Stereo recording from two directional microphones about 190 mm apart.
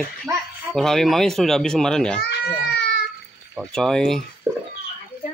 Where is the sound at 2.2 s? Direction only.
60° left (ahead or behind).